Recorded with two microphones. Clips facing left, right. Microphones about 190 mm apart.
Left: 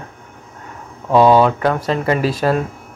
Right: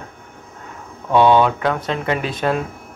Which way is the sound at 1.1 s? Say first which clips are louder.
Left 2 dB; 30° left (ahead or behind).